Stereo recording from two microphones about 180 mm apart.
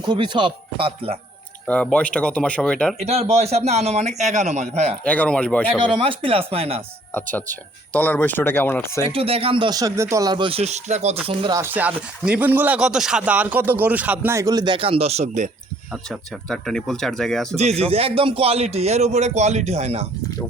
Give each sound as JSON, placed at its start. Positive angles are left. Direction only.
{"t": 0.0, "sound": "speech", "side_deg": -25}
{"t": 1.6, "sound": "speech", "side_deg": 5}
{"t": 3.0, "sound": "a man's voice", "side_deg": -35}
{"t": 5.0, "sound": "speech", "side_deg": 10}
{"t": 5.6, "sound": "a man's voice", "side_deg": -30}
{"t": 7.1, "sound": "speech", "side_deg": 10}
{"t": 9.1, "sound": "a man's voice", "side_deg": -30}
{"t": 11.3, "sound": "speech", "side_deg": -25}
{"t": 11.6, "sound": "speech", "side_deg": -10}
{"t": 15.9, "sound": "speech", "side_deg": 5}
{"t": 17.6, "sound": "a man's voice", "side_deg": -35}